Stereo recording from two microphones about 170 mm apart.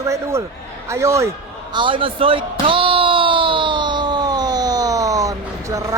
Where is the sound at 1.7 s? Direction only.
30° right (ahead or behind).